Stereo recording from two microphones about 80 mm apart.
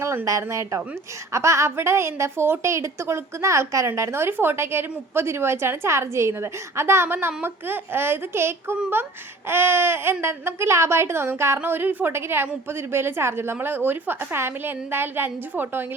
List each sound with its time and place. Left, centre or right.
0.0 s a woman's voice: right